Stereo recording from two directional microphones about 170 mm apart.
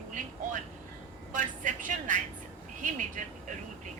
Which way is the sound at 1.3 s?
50° right (ahead or behind).